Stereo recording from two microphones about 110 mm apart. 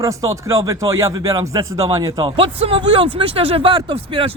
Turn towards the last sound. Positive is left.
turn(degrees=-50)  # may be behind; listen again after turning